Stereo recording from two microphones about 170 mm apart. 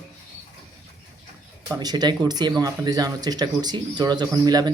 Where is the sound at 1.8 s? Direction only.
25° right (ahead or behind).